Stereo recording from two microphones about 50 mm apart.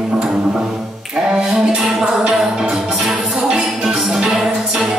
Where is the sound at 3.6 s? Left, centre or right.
Centre.